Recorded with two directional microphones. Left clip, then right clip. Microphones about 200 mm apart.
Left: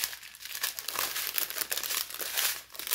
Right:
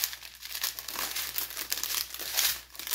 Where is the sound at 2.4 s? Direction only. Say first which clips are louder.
Right 2 dB; 10° left (ahead or behind).